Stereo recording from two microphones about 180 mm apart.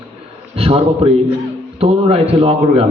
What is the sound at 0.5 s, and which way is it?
A man's voice, 35° right (ahead or behind).